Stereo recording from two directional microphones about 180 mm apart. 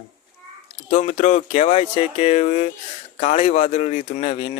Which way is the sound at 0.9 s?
40° left (ahead or behind).